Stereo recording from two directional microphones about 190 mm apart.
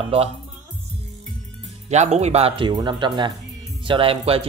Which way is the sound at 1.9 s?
35° right (ahead or behind).